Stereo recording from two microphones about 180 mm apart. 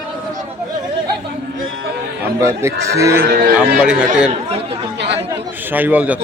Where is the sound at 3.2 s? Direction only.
55° right (ahead or behind).